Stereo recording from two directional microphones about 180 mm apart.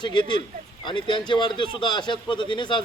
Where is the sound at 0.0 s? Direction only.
25° left (ahead or behind).